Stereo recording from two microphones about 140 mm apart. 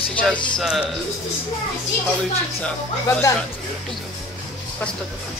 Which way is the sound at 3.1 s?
20° left (ahead or behind).